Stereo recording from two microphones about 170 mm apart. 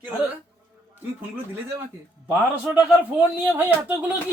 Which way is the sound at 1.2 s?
15° right (ahead or behind).